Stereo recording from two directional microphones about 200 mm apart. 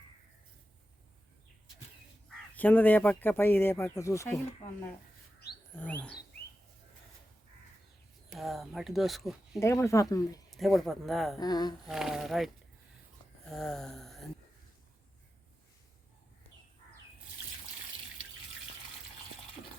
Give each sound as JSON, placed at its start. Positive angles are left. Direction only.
{"t": 2.6, "sound": "speech", "side_deg": 10}
{"t": 5.7, "sound": "speech", "side_deg": 5}
{"t": 8.3, "sound": "speech", "side_deg": 0}
{"t": 9.6, "sound": "speech", "side_deg": 15}
{"t": 10.5, "sound": "speech", "side_deg": 0}
{"t": 11.3, "sound": "speech", "side_deg": 20}
{"t": 11.9, "sound": "speech", "side_deg": 0}
{"t": 13.5, "sound": "a sound", "side_deg": 0}